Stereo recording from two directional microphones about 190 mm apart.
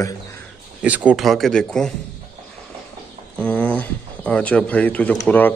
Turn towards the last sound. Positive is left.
turn(degrees=5)  # may be behind; listen again after turning